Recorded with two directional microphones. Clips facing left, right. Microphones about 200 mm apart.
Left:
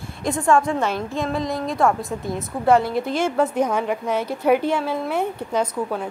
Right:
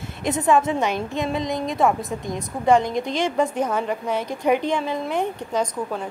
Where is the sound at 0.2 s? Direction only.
20° right (ahead or behind).